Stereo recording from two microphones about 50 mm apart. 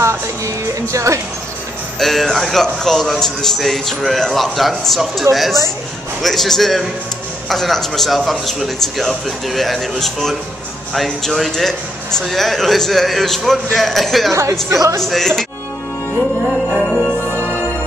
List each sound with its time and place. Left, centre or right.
0.9 s speech: right
2.0 s a man's voice: centre
14.3 s speech: right
15.0 s speech: centre
16.7 s music: centre
17.3 s music: right